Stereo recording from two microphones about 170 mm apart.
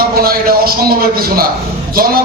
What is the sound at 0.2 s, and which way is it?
A man's voice, 60° right (ahead or behind).